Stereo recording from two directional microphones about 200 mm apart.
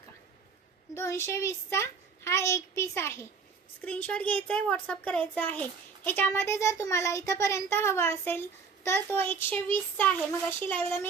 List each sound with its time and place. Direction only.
0.9 s speech: 15° left (ahead or behind)